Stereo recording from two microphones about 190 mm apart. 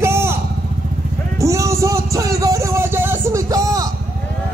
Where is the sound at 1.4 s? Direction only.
15° right (ahead or behind).